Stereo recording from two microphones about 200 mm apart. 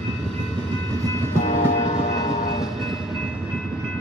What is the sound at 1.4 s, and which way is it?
Train, 40° left (ahead or behind).